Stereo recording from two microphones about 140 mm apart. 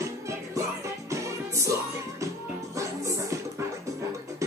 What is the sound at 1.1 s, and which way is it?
Music, 20° right (ahead or behind).